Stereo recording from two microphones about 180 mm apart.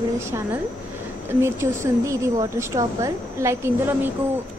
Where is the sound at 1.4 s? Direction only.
15° right (ahead or behind).